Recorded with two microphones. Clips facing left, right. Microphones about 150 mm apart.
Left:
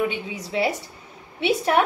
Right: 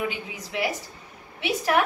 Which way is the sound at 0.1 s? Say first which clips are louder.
Left 5 dB; 25° left (ahead or behind).